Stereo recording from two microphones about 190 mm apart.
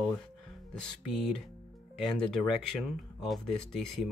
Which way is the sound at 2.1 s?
Centre (ahead or behind).